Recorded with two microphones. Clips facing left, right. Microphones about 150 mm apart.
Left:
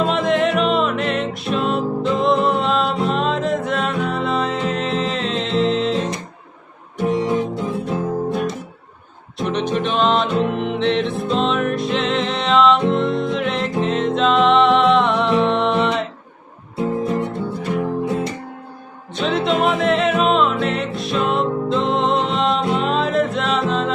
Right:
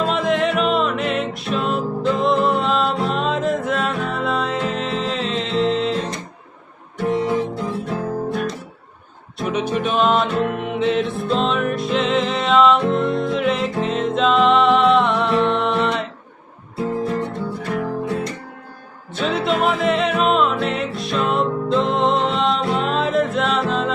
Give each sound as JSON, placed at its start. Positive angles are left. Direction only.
{"t": 0.0, "sound": "music", "side_deg": 0}
{"t": 7.0, "sound": "music", "side_deg": 20}
{"t": 9.4, "sound": "music", "side_deg": -5}
{"t": 17.0, "sound": "music", "side_deg": 20}
{"t": 19.1, "sound": "music", "side_deg": 0}